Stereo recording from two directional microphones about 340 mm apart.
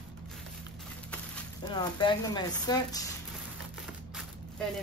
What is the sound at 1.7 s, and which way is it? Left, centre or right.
Speech, centre.